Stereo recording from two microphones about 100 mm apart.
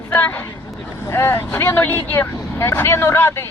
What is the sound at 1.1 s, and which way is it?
Speech, 25° left (ahead or behind).